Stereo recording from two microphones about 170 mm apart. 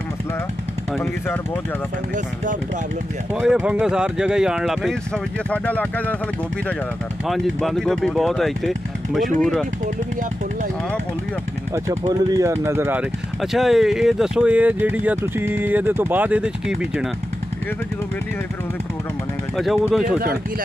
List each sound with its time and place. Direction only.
3.3 s speech: 5° right (ahead or behind)
7.2 s speech: centre (ahead or behind)
11.7 s speech: 20° right (ahead or behind)
13.4 s speech: centre (ahead or behind)
19.5 s speech: centre (ahead or behind)